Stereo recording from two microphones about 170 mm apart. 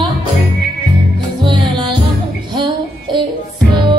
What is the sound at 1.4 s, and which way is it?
Music, 30° right (ahead or behind).